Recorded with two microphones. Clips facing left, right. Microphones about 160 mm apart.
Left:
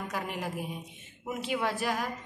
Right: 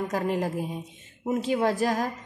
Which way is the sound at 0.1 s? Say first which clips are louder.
Right 8 dB; 40° right (ahead or behind).